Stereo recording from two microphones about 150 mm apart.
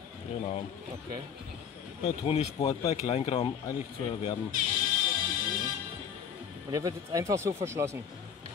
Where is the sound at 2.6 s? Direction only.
25° left (ahead or behind).